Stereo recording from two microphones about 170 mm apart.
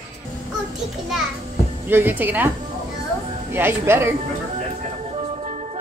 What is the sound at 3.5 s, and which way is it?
Speech, 10° right (ahead or behind).